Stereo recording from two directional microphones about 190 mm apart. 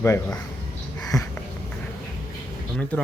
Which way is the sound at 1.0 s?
20° left (ahead or behind).